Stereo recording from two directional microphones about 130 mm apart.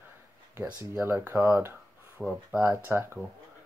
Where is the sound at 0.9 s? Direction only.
15° right (ahead or behind).